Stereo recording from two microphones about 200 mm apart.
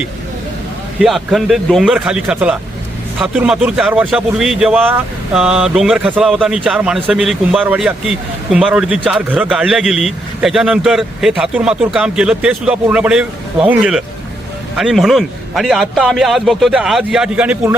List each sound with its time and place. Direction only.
1.0 s a man's voice: centre (ahead or behind)